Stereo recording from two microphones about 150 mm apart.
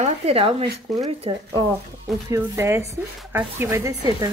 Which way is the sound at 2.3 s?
15° right (ahead or behind).